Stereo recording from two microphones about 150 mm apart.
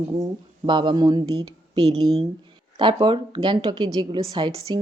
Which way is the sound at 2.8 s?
35° right (ahead or behind).